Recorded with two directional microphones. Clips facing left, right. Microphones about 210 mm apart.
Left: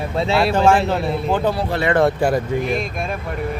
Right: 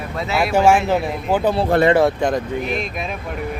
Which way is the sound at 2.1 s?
5° left (ahead or behind).